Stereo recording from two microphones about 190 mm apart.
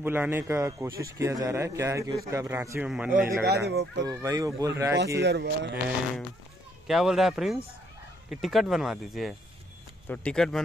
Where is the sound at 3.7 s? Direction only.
60° right (ahead or behind).